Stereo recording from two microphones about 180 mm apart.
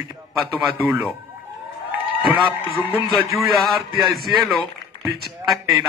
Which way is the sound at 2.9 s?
Centre (ahead or behind).